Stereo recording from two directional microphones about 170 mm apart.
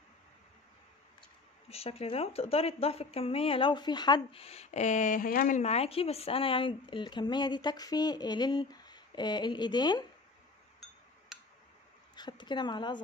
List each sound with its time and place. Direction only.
1.7 s speech: 35° left (ahead or behind); by 5.6 s 55° left (ahead or behind)
5.6 s speech: 40° left (ahead or behind)
12.2 s speech: 25° left (ahead or behind)